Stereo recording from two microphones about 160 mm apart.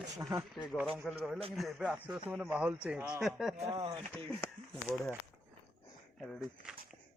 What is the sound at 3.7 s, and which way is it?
Speech, 25° right (ahead or behind).